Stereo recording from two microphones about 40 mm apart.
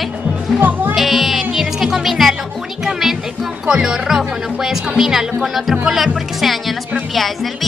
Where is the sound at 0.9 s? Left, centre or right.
Centre.